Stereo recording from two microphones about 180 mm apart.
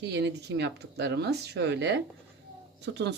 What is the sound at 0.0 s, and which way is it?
Speech, 70° right (ahead or behind).